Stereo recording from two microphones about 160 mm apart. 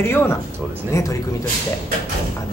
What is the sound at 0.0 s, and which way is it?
A man's voice, 15° left (ahead or behind).